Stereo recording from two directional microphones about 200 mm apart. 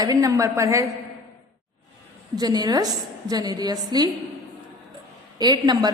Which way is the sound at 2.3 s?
20° right (ahead or behind).